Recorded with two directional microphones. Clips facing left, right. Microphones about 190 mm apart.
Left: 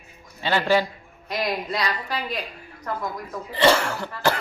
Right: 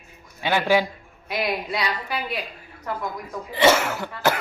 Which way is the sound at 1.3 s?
5° right (ahead or behind).